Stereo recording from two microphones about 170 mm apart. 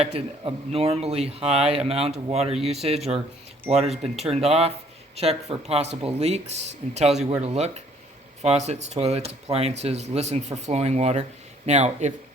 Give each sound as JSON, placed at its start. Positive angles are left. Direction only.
{"t": 0.0, "sound": "speech", "side_deg": -35}